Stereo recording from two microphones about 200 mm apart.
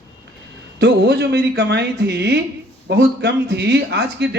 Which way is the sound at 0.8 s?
55° right (ahead or behind).